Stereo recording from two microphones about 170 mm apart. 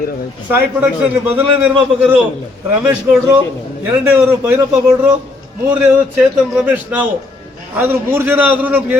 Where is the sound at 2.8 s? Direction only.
15° right (ahead or behind).